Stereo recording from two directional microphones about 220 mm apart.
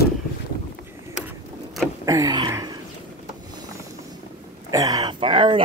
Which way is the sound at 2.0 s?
15° right (ahead or behind).